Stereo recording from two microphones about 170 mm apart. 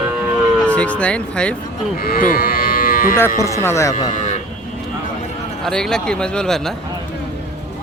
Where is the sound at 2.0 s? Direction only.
55° left (ahead or behind).